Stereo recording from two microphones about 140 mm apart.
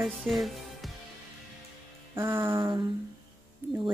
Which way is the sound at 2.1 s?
15° right (ahead or behind).